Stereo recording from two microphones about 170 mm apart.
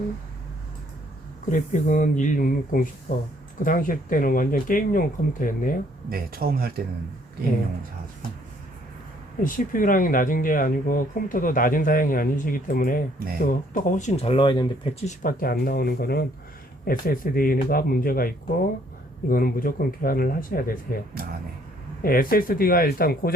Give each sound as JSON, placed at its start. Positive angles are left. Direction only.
{"t": 1.5, "sound": "speech", "side_deg": 50}
{"t": 6.1, "sound": "speech", "side_deg": -60}
{"t": 9.4, "sound": "speech", "side_deg": 55}
{"t": 15.0, "sound": "speech", "side_deg": 55}
{"t": 19.3, "sound": "speech", "side_deg": 60}
{"t": 22.0, "sound": "speech", "side_deg": 60}